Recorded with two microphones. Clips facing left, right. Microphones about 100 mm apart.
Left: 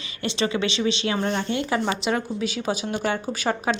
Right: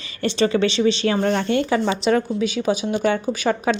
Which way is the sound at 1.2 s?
70° right (ahead or behind).